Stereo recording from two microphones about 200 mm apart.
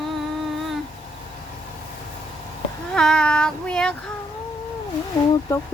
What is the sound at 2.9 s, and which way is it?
Child singing, 5° left (ahead or behind).